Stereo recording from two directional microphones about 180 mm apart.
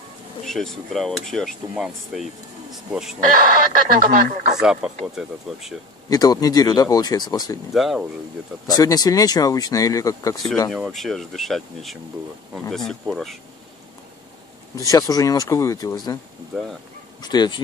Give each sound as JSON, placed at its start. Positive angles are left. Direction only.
{"t": 0.5, "sound": "speech", "side_deg": 0}
{"t": 2.7, "sound": "speech", "side_deg": 0}
{"t": 3.3, "sound": "speech", "side_deg": -50}
{"t": 4.6, "sound": "speech", "side_deg": -5}
{"t": 6.0, "sound": "speech", "side_deg": 20}
{"t": 7.7, "sound": "speech", "side_deg": 0}
{"t": 8.6, "sound": "speech", "side_deg": 20}
{"t": 10.7, "sound": "speech", "side_deg": 0}
{"t": 14.9, "sound": "speech", "side_deg": 20}
{"t": 17.2, "sound": "speech", "side_deg": 25}